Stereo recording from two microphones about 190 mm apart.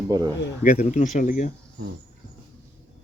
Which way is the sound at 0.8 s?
40° left (ahead or behind).